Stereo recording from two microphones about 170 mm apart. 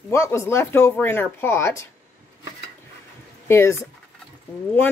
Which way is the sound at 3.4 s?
15° left (ahead or behind).